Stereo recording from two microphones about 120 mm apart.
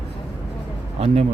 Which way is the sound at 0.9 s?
60° right (ahead or behind).